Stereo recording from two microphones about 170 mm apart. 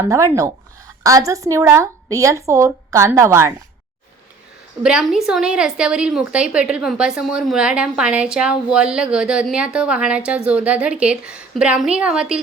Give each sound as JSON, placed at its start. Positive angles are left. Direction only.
{"t": 0.0, "sound": "a woman's voice", "side_deg": -20}
{"t": 4.8, "sound": "a woman's voice", "side_deg": -5}